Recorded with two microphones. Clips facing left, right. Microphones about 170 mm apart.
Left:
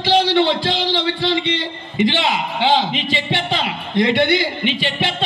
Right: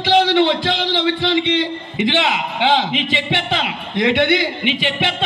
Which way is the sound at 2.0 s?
20° right (ahead or behind).